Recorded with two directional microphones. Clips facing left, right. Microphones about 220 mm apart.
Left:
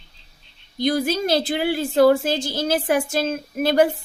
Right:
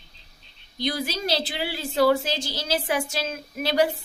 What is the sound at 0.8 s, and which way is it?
A child's voice, 50° left (ahead or behind).